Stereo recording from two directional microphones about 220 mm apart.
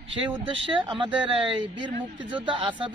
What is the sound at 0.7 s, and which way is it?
Speech, 20° right (ahead or behind).